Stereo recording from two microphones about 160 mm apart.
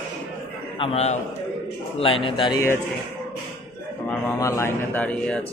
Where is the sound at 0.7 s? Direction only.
40° left (ahead or behind).